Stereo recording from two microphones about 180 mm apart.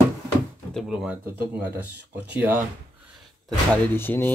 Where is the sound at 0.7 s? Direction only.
5° right (ahead or behind).